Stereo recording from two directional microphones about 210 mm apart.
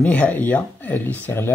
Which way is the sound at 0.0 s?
5° left (ahead or behind).